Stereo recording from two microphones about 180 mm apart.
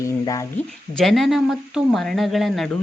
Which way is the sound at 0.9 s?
Centre (ahead or behind).